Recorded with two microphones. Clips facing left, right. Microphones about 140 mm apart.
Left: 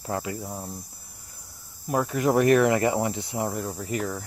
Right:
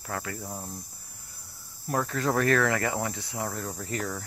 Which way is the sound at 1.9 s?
15° left (ahead or behind).